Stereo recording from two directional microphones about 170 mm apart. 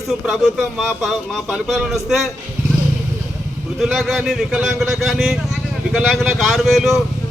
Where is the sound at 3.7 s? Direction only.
Centre (ahead or behind).